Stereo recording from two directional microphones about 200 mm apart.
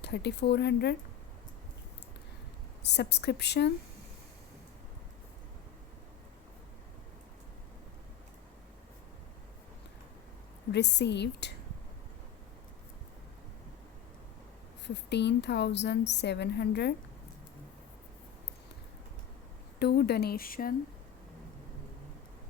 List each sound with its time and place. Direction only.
0.0 s a woman's voice: 55° left (ahead or behind)
2.8 s a woman's voice: 55° left (ahead or behind)
10.7 s a woman's voice: 60° left (ahead or behind)
14.8 s a woman's voice: 60° left (ahead or behind)
19.8 s speech: 55° left (ahead or behind)